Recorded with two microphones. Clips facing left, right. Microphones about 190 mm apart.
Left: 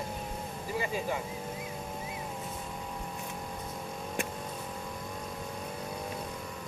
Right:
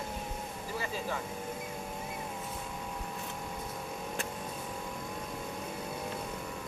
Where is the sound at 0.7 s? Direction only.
15° left (ahead or behind).